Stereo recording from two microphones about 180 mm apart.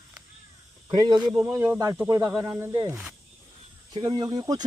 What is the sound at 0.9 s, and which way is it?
Speech, 25° right (ahead or behind).